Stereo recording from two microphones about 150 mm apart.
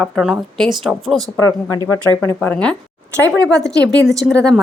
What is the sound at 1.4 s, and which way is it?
Speech, 20° left (ahead or behind).